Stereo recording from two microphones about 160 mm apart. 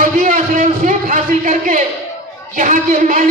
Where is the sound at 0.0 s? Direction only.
55° right (ahead or behind).